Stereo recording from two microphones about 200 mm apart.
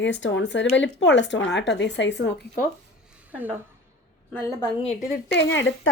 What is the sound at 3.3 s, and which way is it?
Speech, 10° right (ahead or behind).